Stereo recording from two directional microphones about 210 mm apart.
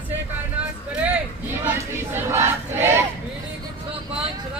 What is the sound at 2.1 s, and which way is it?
Battle cry, 10° right (ahead or behind).